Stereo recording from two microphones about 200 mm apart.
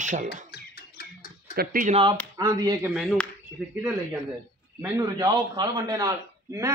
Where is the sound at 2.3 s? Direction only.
20° right (ahead or behind).